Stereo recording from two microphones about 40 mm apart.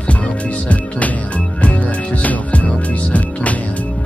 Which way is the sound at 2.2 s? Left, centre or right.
Left.